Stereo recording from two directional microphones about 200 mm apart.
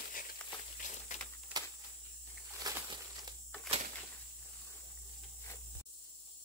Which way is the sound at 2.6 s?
20° right (ahead or behind).